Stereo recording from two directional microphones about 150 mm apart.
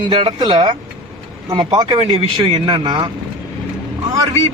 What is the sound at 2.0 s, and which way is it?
Speech, 40° right (ahead or behind).